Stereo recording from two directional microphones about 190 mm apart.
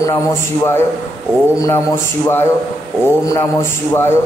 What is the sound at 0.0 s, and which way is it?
Speech, 15° left (ahead or behind).